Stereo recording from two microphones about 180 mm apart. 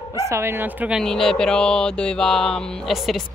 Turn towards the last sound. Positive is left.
turn(degrees=0)  # may be behind; listen again after turning